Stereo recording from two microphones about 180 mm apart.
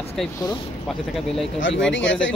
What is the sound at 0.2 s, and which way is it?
Speech, centre (ahead or behind).